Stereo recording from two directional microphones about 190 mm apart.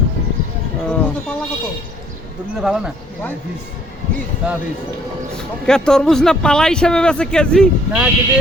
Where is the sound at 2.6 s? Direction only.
5° right (ahead or behind).